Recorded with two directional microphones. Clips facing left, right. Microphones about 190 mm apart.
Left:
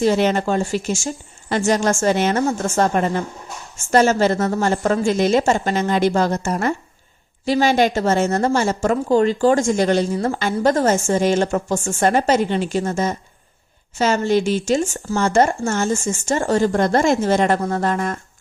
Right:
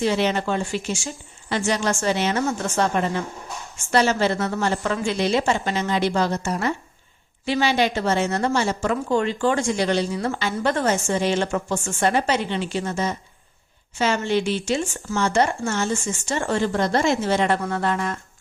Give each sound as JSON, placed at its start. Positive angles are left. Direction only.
{"t": 0.0, "sound": "speech", "side_deg": 45}